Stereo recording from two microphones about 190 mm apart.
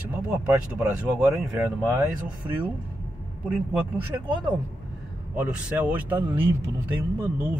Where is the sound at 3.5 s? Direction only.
10° right (ahead or behind).